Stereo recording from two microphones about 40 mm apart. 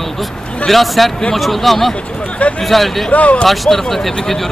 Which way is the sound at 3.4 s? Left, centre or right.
Centre.